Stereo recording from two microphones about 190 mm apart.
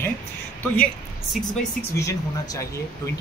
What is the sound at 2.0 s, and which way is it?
Speech, 15° left (ahead or behind).